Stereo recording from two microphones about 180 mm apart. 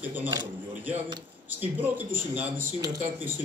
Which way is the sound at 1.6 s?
10° right (ahead or behind).